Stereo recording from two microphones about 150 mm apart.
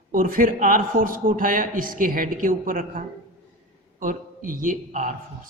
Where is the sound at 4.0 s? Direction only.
65° right (ahead or behind).